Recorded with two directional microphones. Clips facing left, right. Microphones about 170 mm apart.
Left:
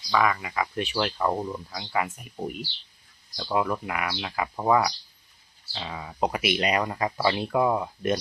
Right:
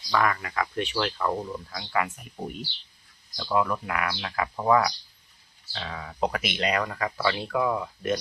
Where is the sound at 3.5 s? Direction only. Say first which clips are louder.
Right 1 dB; 10° left (ahead or behind).